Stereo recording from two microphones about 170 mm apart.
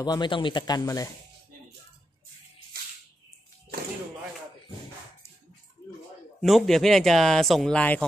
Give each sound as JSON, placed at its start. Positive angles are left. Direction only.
{"t": 0.0, "sound": "speech", "side_deg": 25}
{"t": 6.4, "sound": "speech", "side_deg": 0}